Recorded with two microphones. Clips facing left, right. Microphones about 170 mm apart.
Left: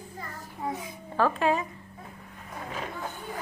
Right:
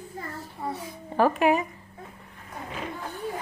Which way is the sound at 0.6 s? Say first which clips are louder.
Even; 15° left (ahead or behind).